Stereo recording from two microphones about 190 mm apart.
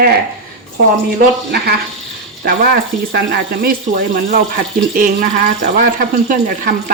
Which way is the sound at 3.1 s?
55° right (ahead or behind).